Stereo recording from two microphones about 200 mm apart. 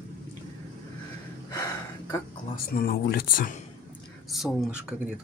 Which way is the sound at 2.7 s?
50° left (ahead or behind).